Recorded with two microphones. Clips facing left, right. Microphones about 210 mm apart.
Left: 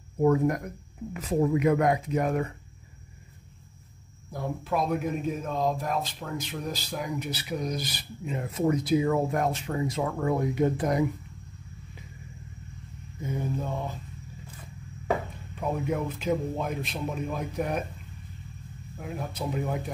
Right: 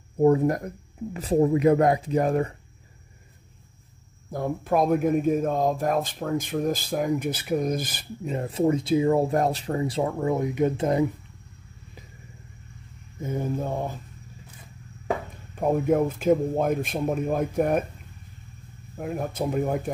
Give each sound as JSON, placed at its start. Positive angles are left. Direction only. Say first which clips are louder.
{"t": 0.2, "sound": "speech", "louder": "right 3 dB", "side_deg": -30}
{"t": 4.3, "sound": "speech", "louder": "right 5 dB", "side_deg": -50}
{"t": 13.2, "sound": "speech", "louder": "right 3 dB", "side_deg": -50}
{"t": 15.5, "sound": "speech", "louder": "right 7 dB", "side_deg": -50}
{"t": 18.9, "sound": "speech", "louder": "right 6 dB", "side_deg": -50}